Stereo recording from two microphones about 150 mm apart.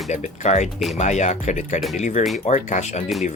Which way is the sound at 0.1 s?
50° left (ahead or behind).